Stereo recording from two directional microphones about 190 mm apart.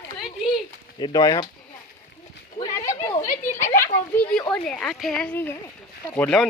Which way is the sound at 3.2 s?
45° left (ahead or behind).